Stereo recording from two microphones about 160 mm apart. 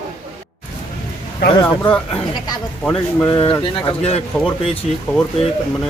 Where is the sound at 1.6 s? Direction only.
5° left (ahead or behind).